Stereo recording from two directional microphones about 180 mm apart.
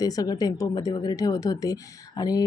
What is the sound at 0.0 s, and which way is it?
Speech, 20° left (ahead or behind).